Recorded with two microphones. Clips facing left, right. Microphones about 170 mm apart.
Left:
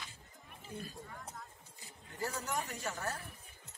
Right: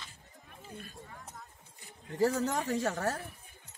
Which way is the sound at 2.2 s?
90° right.